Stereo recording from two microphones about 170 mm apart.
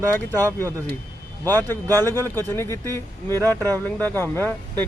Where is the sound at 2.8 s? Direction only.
20° right (ahead or behind).